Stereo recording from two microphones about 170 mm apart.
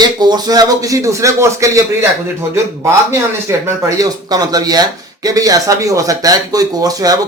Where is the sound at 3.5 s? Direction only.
15° right (ahead or behind).